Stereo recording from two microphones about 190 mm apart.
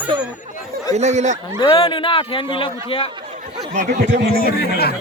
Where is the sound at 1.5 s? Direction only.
25° left (ahead or behind).